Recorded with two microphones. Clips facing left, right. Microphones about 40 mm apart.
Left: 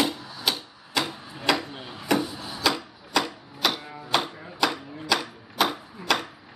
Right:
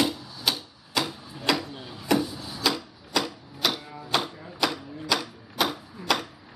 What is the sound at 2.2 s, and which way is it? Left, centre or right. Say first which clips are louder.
Wood: left 2 dB; left.